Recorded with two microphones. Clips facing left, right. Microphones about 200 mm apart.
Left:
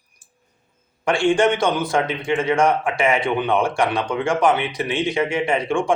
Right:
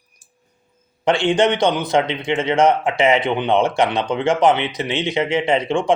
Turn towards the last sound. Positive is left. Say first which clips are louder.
# right 2 dB
turn(degrees=-20)  # may be behind; listen again after turning